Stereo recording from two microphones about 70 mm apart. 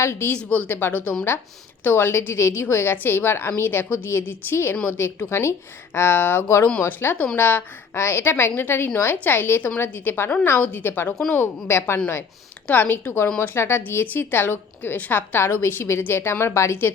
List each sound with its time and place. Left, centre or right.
0.0 s a woman's voice: left
0.3 s a woman's voice: centre
7.9 s a woman's voice: left